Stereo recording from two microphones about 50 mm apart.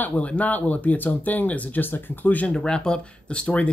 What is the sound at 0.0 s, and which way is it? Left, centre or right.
Speech, left.